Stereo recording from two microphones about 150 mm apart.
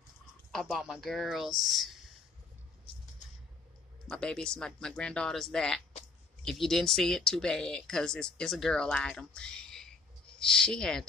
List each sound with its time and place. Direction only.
0.5 s speech: centre (ahead or behind)
4.1 s speech: 5° left (ahead or behind)